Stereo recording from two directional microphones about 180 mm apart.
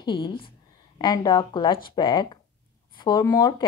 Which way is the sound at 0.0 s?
25° left (ahead or behind).